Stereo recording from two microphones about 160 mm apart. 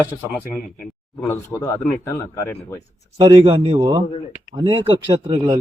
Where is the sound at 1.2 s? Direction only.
15° left (ahead or behind).